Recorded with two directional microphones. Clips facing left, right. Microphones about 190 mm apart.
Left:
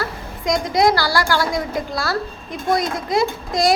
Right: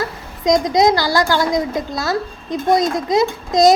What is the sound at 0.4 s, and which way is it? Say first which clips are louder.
A woman's voice: right 3 dB; 20° right (ahead or behind).